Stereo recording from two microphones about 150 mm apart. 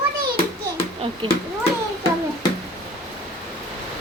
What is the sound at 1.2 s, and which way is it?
Speech, 30° right (ahead or behind).